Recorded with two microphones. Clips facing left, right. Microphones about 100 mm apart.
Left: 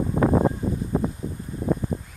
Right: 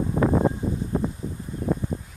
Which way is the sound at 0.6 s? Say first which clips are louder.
Left 1 dB; centre (ahead or behind).